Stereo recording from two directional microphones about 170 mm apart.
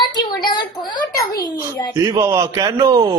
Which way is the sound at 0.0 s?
25° left (ahead or behind).